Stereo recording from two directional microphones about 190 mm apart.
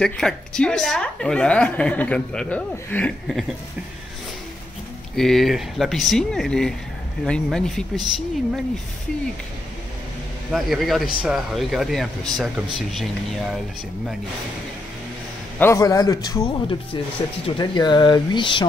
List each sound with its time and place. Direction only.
0.0 s a woman's voice: 5° left (ahead or behind)
5.1 s a woman's voice: centre (ahead or behind)
10.5 s a woman's voice: centre (ahead or behind)
15.6 s speech: 15° left (ahead or behind)